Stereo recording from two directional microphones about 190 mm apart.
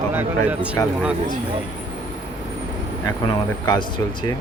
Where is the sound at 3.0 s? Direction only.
20° left (ahead or behind).